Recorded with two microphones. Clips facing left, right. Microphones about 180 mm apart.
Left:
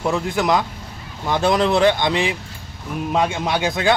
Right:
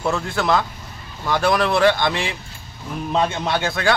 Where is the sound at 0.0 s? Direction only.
15° left (ahead or behind).